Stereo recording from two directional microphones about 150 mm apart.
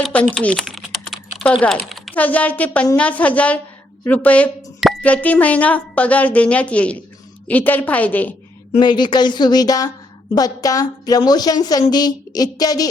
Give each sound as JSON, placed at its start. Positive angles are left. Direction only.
{"t": 0.0, "sound": "speech", "side_deg": 10}
{"t": 0.3, "sound": "typing", "side_deg": 5}
{"t": 2.2, "sound": "a woman's voice", "side_deg": 10}
{"t": 8.8, "sound": "a woman's voice", "side_deg": 30}